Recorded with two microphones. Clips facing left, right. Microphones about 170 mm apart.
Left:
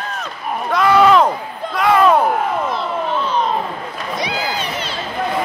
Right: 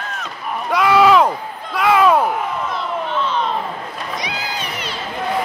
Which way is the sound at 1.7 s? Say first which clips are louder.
Left 1 dB; 5° right (ahead or behind).